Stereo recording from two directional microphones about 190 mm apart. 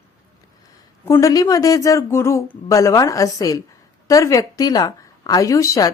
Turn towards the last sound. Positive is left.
turn(degrees=15)  # may be behind; listen again after turning